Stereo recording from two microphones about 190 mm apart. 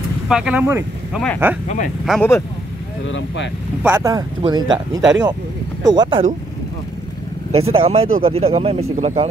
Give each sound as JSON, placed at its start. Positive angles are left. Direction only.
{"t": 0.3, "sound": "speech", "side_deg": -5}
{"t": 2.0, "sound": "speech", "side_deg": 5}
{"t": 3.1, "sound": "speech", "side_deg": 75}
{"t": 3.8, "sound": "speech", "side_deg": -15}
{"t": 4.4, "sound": "speech", "side_deg": -25}
{"t": 7.6, "sound": "speech", "side_deg": -30}